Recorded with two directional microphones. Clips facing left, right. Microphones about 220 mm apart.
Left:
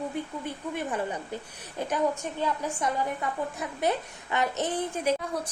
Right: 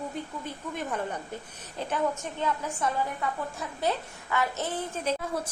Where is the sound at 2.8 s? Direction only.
15° left (ahead or behind).